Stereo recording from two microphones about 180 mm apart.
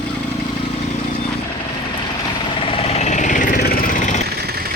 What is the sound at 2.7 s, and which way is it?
Vehicle, 35° left (ahead or behind).